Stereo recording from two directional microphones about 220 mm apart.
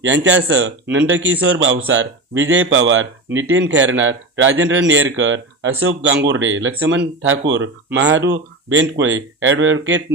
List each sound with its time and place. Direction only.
0.0 s a man's voice: 55° right (ahead or behind)